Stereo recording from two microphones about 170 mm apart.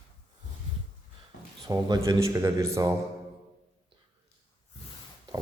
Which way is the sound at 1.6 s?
20° right (ahead or behind).